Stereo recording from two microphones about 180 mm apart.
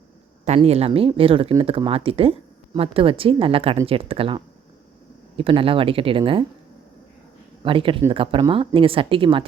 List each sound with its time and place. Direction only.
0.4 s speech: 35° right (ahead or behind)
7.6 s speech: 30° right (ahead or behind)